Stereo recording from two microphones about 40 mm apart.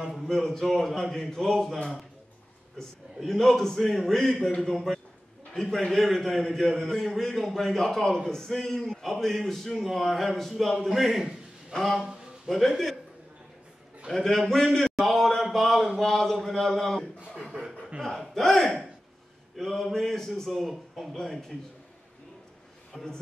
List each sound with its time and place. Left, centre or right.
0.3 s a man's voice: centre
3.3 s a man's voice: centre
5.9 s a man's voice: centre
14.1 s a man's voice: centre
18.0 s a man's voice: centre
21.2 s a man's voice: centre
22.9 s a man's voice: centre